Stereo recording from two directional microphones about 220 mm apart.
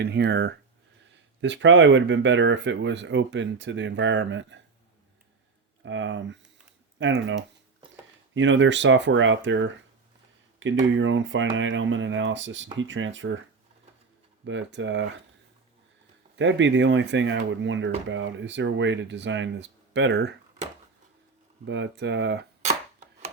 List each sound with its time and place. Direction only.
0.0 s speech: 50° right (ahead or behind)
5.8 s speech: 55° right (ahead or behind)
8.4 s speech: 55° right (ahead or behind)
14.4 s speech: 55° right (ahead or behind)
16.4 s speech: 55° right (ahead or behind)
21.6 s speech: 55° right (ahead or behind)
22.6 s chopping: 30° right (ahead or behind)